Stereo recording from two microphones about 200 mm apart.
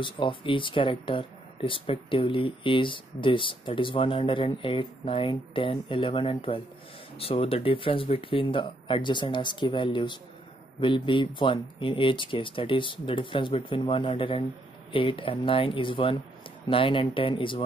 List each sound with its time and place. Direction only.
0.0 s speech: 25° left (ahead or behind)